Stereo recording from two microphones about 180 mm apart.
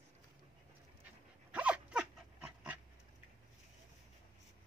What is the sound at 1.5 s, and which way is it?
Dog, 5° right (ahead or behind).